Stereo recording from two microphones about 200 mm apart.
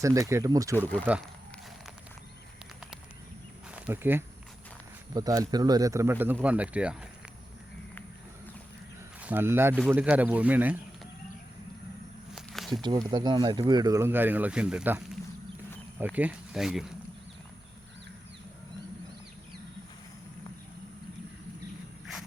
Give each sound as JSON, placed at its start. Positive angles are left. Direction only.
{"t": 0.0, "sound": "speech", "side_deg": -15}
{"t": 0.8, "sound": "speech", "side_deg": 5}
{"t": 3.8, "sound": "speech", "side_deg": -10}
{"t": 9.2, "sound": "speech", "side_deg": -10}
{"t": 12.3, "sound": "snake", "side_deg": 0}
{"t": 12.8, "sound": "speech", "side_deg": -20}